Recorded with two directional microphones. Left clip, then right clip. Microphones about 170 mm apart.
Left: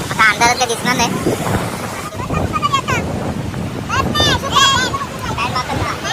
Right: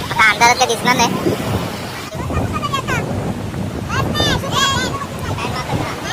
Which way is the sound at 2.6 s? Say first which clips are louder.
Left 5 dB; 15° right (ahead or behind).